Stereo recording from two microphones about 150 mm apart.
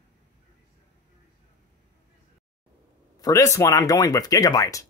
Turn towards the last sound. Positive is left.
turn(degrees=20)  # may be behind; listen again after turning